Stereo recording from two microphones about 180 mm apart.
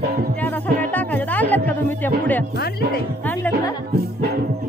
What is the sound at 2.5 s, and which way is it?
Speech, 60° left (ahead or behind).